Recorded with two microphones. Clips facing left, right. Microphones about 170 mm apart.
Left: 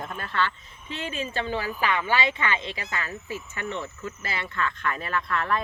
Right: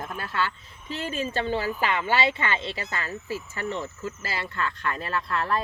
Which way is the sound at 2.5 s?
35° right (ahead or behind).